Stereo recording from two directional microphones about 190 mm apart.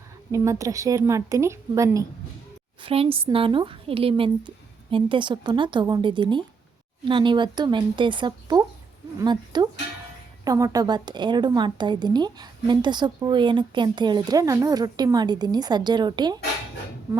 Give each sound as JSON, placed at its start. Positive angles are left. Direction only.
{"t": 0.3, "sound": "a woman's voice", "side_deg": -15}
{"t": 2.8, "sound": "a woman's voice", "side_deg": -30}